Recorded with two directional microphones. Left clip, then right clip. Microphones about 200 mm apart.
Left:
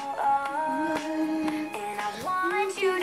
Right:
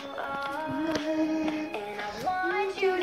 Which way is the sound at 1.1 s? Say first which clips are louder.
Even; 10° left (ahead or behind).